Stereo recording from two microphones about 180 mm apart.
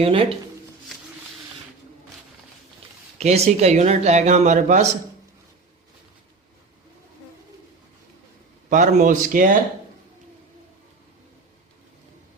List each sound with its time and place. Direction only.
0.0 s a man's voice: 30° right (ahead or behind)
3.2 s a man's voice: 35° right (ahead or behind)
8.7 s speech: 45° right (ahead or behind)